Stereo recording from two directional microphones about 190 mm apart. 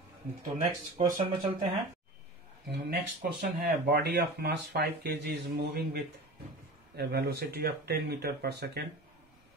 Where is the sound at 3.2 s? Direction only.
55° right (ahead or behind).